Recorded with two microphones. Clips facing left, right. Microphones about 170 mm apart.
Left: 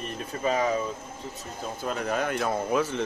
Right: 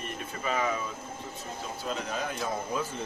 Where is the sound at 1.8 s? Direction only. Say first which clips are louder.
Left 6 dB; 55° left (ahead or behind); by 3.0 s 75° left (ahead or behind).